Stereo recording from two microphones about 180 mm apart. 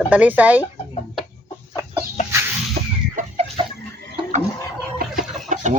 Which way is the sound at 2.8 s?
45° right (ahead or behind).